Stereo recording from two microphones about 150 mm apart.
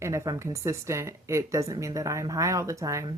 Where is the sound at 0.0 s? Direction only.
20° right (ahead or behind).